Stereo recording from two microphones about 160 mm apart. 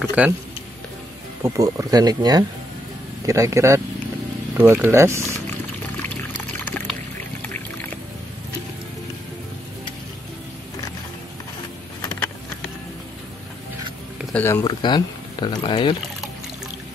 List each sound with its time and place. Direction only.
0.0 s speech: 10° right (ahead or behind)
1.4 s speech: 20° right (ahead or behind)
6.6 s music: 10° left (ahead or behind)
14.3 s speech: 15° left (ahead or behind)
14.6 s speech: 30° left (ahead or behind)